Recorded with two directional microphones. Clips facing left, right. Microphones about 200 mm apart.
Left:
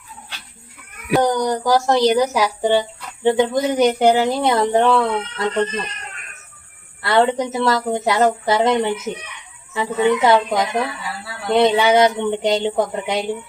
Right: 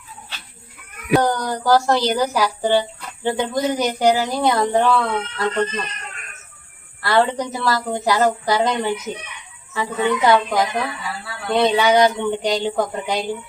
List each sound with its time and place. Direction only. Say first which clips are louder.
1.2 s speech: left 3 dB; 20° left (ahead or behind)
7.0 s speech: left 2 dB; 20° left (ahead or behind)